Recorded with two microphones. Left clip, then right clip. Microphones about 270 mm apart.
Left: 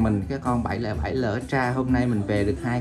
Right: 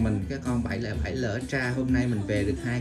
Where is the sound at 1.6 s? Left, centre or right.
Left.